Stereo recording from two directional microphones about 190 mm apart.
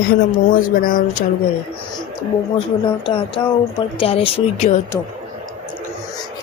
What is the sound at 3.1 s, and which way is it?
Speech, 30° left (ahead or behind).